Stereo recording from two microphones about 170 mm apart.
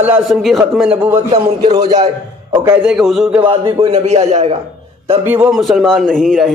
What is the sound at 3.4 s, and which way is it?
A man's voice, 30° right (ahead or behind).